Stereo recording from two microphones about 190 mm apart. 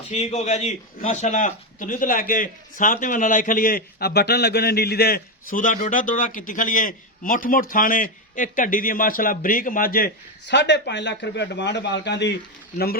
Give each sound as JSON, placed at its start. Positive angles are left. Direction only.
{"t": 0.1, "sound": "a man's voice", "side_deg": 35}
{"t": 10.5, "sound": "a man's voice", "side_deg": 65}